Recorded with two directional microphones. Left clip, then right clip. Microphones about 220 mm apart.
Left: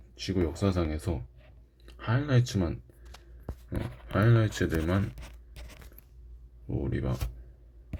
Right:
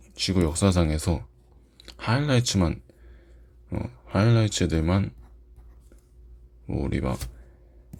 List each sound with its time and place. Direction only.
0.1 s speech: 25° right (ahead or behind)
4.0 s speech: 25° right (ahead or behind)
6.7 s speech: 25° right (ahead or behind)